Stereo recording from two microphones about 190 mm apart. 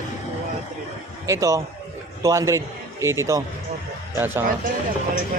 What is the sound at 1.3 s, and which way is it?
A man's voice, 15° right (ahead or behind).